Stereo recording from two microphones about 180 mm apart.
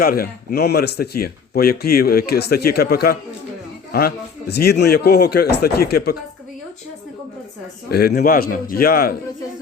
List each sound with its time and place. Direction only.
0.0 s speech: 55° left (ahead or behind)
7.9 s speech: 60° left (ahead or behind)